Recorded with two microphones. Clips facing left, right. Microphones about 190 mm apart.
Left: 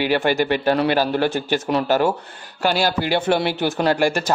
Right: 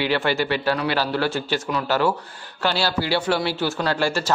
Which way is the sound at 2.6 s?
15° left (ahead or behind).